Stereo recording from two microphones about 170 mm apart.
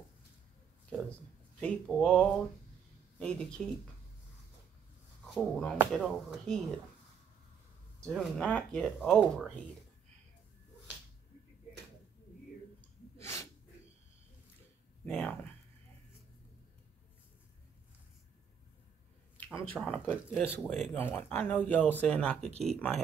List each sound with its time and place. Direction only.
1.6 s speech: 5° left (ahead or behind)
5.2 s speech: 5° left (ahead or behind)
8.0 s speech: 5° left (ahead or behind)
13.2 s sneeze: 15° left (ahead or behind)
15.0 s a sound: 10° left (ahead or behind)
19.3 s speech: 10° left (ahead or behind)
20.1 s speech: 5° right (ahead or behind)
20.6 s speech: 5° left (ahead or behind)